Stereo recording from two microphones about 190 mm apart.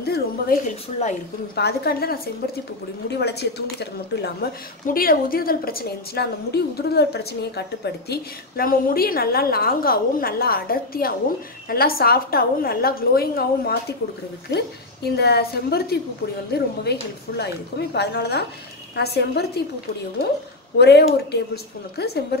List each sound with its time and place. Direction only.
0.0 s a sound: 55° left (ahead or behind)
0.7 s a woman's voice: 40° left (ahead or behind)
1.5 s speech: 60° left (ahead or behind)
4.8 s a woman's voice: 50° left (ahead or behind)
15.0 s speech: 60° left (ahead or behind)
20.7 s speech: 60° left (ahead or behind)